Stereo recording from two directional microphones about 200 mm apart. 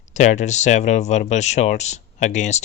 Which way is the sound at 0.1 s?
35° left (ahead or behind).